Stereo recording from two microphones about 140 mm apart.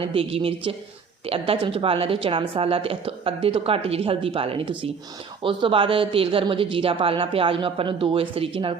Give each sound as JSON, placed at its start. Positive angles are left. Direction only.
{"t": 0.0, "sound": "a woman's voice", "side_deg": -40}